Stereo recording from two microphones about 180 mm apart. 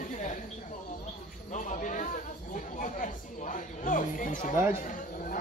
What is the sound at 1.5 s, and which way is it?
Speech, 45° left (ahead or behind).